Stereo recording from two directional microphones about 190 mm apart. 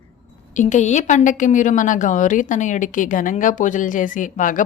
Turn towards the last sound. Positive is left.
turn(degrees=45)  # may be behind; listen again after turning